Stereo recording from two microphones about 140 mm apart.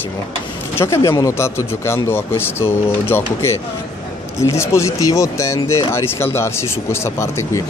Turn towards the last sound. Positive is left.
turn(degrees=20)  # may be behind; listen again after turning